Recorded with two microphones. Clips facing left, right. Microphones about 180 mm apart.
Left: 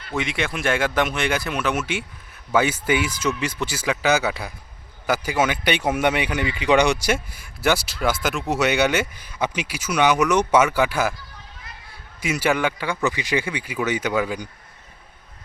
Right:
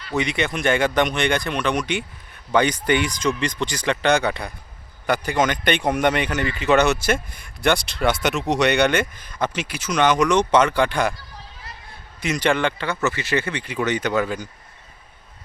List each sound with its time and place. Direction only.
0.1 s speech: centre (ahead or behind)
12.2 s speech: 10° left (ahead or behind)